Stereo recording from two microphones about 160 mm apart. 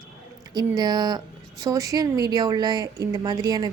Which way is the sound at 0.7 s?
25° right (ahead or behind).